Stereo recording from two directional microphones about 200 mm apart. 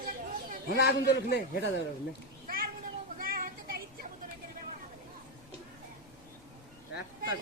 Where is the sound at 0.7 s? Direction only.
55° left (ahead or behind).